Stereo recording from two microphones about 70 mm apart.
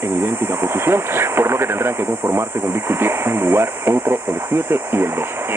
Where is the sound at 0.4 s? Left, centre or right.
Right.